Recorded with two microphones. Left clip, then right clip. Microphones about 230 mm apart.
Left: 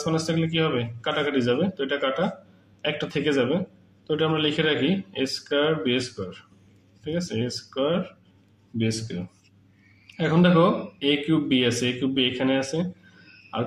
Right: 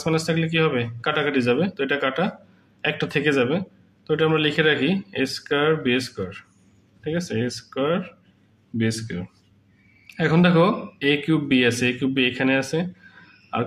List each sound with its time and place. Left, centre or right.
0.0 s speech: right
10.1 s speech: right